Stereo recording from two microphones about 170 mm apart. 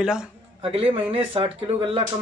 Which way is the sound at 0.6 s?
35° right (ahead or behind).